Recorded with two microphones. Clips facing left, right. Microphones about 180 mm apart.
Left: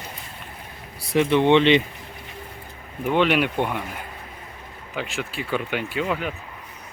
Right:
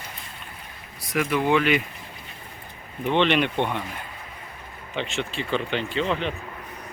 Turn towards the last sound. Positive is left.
turn(degrees=5)  # may be behind; listen again after turning